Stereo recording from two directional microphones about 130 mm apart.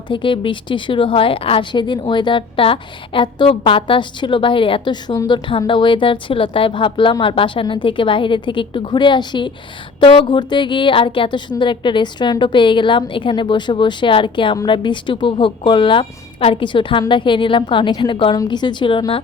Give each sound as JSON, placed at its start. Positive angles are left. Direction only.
{"t": 0.1, "sound": "speech", "side_deg": 40}